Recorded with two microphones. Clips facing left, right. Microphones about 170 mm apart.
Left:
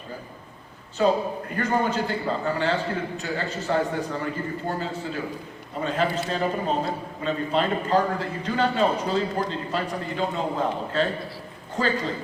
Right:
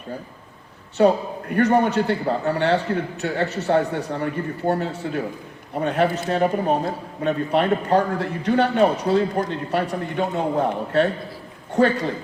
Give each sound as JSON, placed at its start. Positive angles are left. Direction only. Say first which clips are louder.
{"t": 0.9, "sound": "a man's voice", "louder": "right 4 dB", "side_deg": -70}